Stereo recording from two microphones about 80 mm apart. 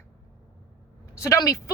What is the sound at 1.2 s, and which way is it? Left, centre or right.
Speech, left.